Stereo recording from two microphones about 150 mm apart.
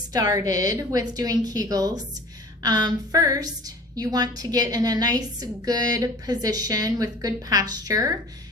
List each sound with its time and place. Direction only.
0.1 s a woman's voice: 25° right (ahead or behind)